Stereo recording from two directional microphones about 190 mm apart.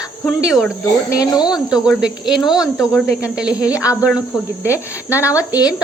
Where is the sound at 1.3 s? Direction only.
20° left (ahead or behind).